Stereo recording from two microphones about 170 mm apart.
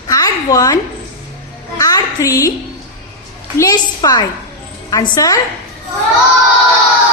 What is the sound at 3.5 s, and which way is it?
A woman's voice, 20° left (ahead or behind).